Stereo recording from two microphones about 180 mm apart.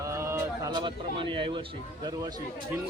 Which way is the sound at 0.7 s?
30° right (ahead or behind).